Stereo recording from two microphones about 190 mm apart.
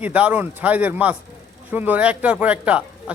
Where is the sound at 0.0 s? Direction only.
5° right (ahead or behind).